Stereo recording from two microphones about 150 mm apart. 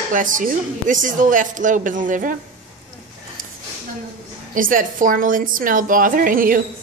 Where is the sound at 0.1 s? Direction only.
60° right (ahead or behind).